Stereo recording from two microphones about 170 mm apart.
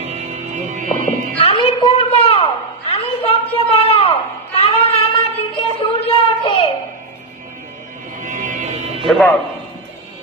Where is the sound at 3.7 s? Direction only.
35° left (ahead or behind).